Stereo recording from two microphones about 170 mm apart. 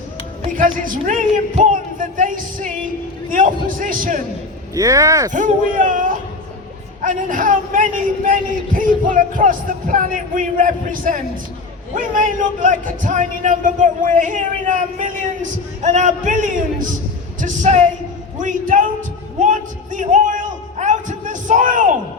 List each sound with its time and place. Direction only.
0.5 s speech: 50° right (ahead or behind)
3.8 s speech: 55° right (ahead or behind)
4.7 s speech: 20° right (ahead or behind)
5.3 s speech: 50° right (ahead or behind)
19.4 s a sound: 45° right (ahead or behind)